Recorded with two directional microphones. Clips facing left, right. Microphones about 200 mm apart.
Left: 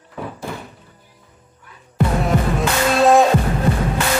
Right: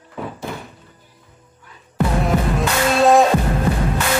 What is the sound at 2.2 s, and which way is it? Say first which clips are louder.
Music: even; centre (ahead or behind).